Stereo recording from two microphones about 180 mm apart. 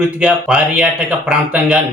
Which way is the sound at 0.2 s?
5° right (ahead or behind).